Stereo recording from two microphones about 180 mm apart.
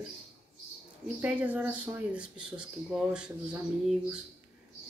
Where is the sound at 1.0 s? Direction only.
10° right (ahead or behind).